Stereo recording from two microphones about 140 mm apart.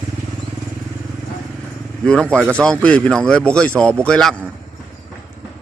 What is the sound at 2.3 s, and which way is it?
Speech, 10° right (ahead or behind).